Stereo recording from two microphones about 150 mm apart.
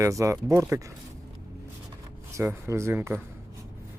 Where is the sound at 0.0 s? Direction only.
20° right (ahead or behind).